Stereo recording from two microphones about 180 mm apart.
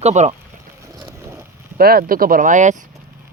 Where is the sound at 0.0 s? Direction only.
40° right (ahead or behind).